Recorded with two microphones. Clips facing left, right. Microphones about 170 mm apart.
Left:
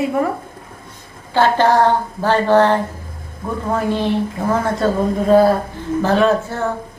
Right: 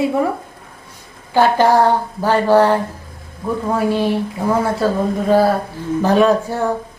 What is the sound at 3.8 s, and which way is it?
A woman's voice, 10° right (ahead or behind).